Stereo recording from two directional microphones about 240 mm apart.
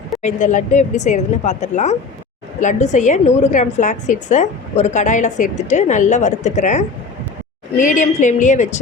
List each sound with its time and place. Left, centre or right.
0.2 s a woman's voice: left